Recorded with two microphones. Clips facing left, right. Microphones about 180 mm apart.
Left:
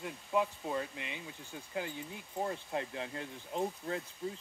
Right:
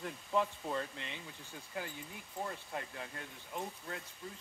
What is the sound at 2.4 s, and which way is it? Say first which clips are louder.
Speech: left 5 dB; 25° left (ahead or behind).